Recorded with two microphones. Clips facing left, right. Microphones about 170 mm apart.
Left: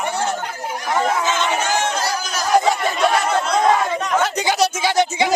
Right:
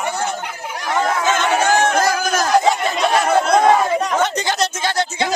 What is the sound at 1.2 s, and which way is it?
Chatter, 55° right (ahead or behind).